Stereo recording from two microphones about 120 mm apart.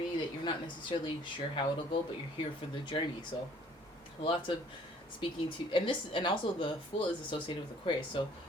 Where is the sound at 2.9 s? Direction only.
40° left (ahead or behind).